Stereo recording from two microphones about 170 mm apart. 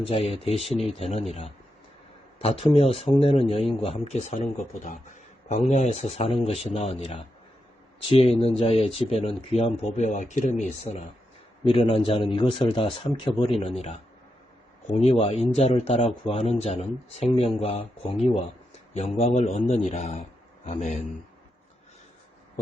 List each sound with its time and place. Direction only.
0.0 s speech: 35° left (ahead or behind)
11.6 s speech: 35° left (ahead or behind)
19.1 s a man's voice: 45° left (ahead or behind)